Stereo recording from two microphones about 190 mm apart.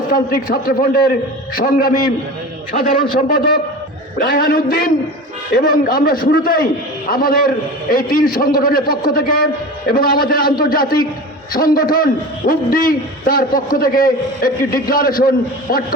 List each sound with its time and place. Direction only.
0.1 s a man's voice: 50° left (ahead or behind)